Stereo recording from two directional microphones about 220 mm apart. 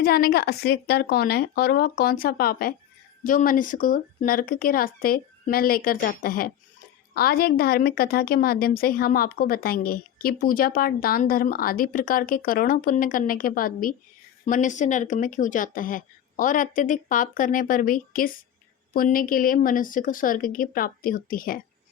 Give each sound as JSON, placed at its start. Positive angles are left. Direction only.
{"t": 0.0, "sound": "a woman's voice", "side_deg": 45}